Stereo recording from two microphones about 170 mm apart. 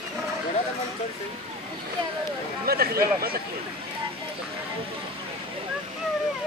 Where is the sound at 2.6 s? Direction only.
65° right (ahead or behind).